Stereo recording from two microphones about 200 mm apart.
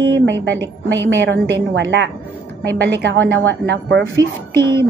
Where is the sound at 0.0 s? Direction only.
60° right (ahead or behind).